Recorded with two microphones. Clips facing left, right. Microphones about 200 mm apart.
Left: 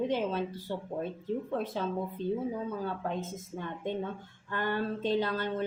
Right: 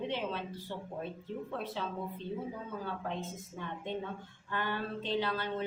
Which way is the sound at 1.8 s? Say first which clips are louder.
Left 5 dB; 45° left (ahead or behind).